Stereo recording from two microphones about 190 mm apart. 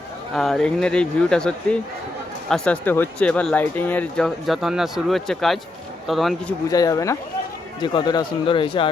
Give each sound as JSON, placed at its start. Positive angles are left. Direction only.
{"t": 0.3, "sound": "speech", "side_deg": 0}
{"t": 6.7, "sound": "speech", "side_deg": 20}